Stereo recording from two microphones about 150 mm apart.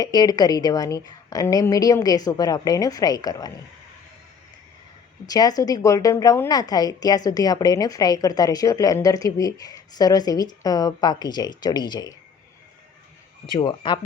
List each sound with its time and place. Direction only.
0.0 s a woman's voice: 25° left (ahead or behind)
5.2 s a woman's voice: 25° left (ahead or behind)
13.6 s speech: 30° left (ahead or behind)